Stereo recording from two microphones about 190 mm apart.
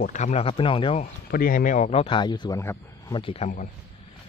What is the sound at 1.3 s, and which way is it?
Speech, 50° left (ahead or behind).